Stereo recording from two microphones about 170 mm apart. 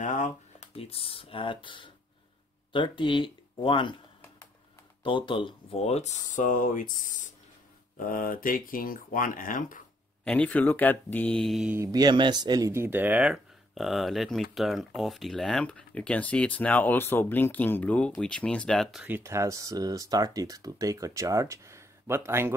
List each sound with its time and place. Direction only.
0.0 s speech: 45° left (ahead or behind); by 3.9 s 30° left (ahead or behind)
5.0 s speech: 30° left (ahead or behind); by 6.9 s 50° left (ahead or behind)
8.0 s speech: 55° left (ahead or behind)
10.2 s speech: 5° left (ahead or behind)
11.7 s speech: 20° right (ahead or behind)